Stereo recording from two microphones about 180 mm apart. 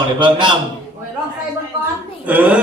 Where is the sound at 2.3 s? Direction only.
10° right (ahead or behind).